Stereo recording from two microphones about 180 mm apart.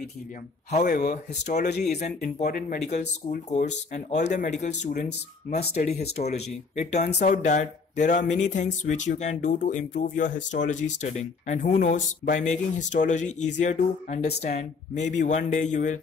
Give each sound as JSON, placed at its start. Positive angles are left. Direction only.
{"t": 0.7, "sound": "speech", "side_deg": 40}
{"t": 1.6, "sound": "speech", "side_deg": 65}
{"t": 3.3, "sound": "speech", "side_deg": 40}